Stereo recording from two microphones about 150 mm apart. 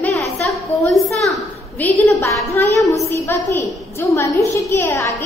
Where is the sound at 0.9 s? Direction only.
Centre (ahead or behind).